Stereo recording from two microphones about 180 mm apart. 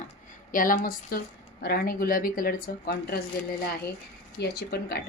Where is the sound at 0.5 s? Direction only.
50° left (ahead or behind).